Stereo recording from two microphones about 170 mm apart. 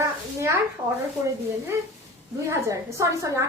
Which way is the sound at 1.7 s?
15° right (ahead or behind).